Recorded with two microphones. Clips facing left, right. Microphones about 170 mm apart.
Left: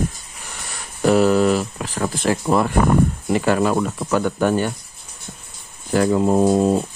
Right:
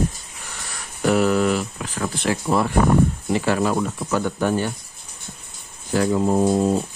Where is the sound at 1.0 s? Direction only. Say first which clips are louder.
Left 3 dB; 35° left (ahead or behind); by 4.7 s 60° left (ahead or behind).